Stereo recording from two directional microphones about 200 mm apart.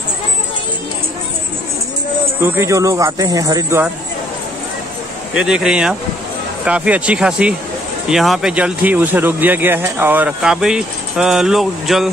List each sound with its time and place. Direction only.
2.4 s speech: 15° right (ahead or behind)
5.3 s speech: 5° right (ahead or behind)